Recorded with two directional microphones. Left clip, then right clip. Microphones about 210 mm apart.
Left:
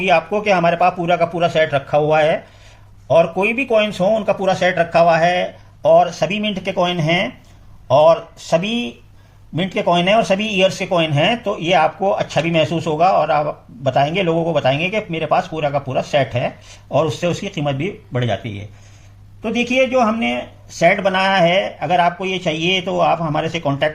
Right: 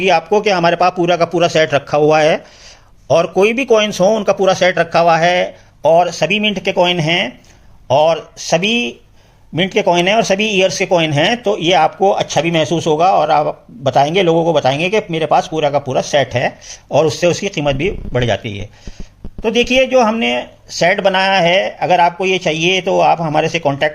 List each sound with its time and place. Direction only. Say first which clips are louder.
0.0 s speech: right 3 dB; 40° right (ahead or behind)